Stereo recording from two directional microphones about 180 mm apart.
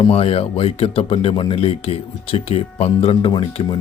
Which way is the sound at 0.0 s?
30° left (ahead or behind).